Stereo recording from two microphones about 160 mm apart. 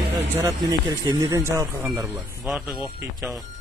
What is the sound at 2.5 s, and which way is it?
Speech, 5° right (ahead or behind).